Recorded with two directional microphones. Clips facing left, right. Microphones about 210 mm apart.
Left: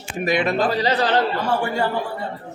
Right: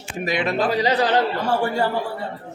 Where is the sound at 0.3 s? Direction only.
50° left (ahead or behind).